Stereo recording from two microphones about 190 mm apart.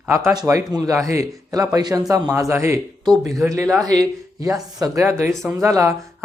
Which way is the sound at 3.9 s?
20° right (ahead or behind).